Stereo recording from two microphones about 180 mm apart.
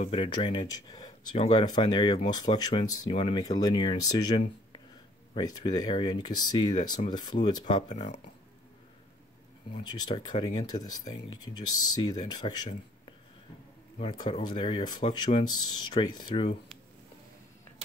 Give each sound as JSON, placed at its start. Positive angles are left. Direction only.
{"t": 0.0, "sound": "speech", "side_deg": 30}
{"t": 7.9, "sound": "speech", "side_deg": 40}
{"t": 9.8, "sound": "speech", "side_deg": 25}
{"t": 13.9, "sound": "speech", "side_deg": 25}